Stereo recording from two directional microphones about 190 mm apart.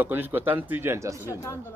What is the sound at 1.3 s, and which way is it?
Speech, 15° left (ahead or behind).